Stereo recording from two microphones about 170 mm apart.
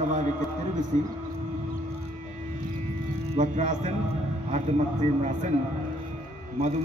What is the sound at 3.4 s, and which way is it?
Speech, 45° right (ahead or behind).